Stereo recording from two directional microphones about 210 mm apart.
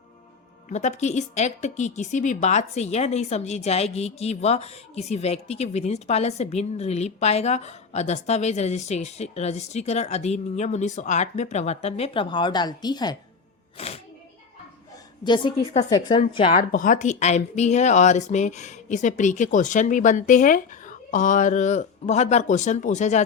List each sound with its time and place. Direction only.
0.7 s a woman's voice: 35° left (ahead or behind)
13.7 s music: 30° left (ahead or behind)
15.2 s a woman's voice: 20° left (ahead or behind)
16.6 s a woman's voice: 40° left (ahead or behind)